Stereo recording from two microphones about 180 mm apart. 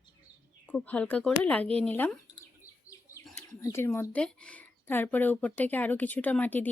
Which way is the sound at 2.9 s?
20° left (ahead or behind).